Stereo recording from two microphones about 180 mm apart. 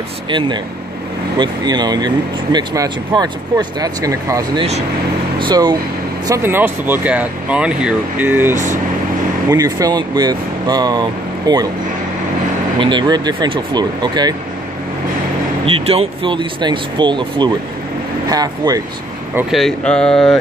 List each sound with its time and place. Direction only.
0.3 s speech: 25° right (ahead or behind)
12.7 s speech: 25° right (ahead or behind)
15.6 s speech: 35° right (ahead or behind)
19.5 s speech: 5° left (ahead or behind)